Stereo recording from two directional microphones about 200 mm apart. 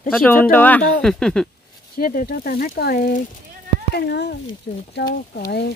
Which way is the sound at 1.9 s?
45° left (ahead or behind).